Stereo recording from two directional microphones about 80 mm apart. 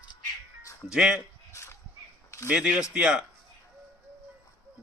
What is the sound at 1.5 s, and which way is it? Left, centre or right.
Dog, left.